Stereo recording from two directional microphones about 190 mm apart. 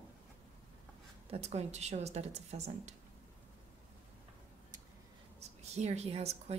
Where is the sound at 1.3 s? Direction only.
35° right (ahead or behind).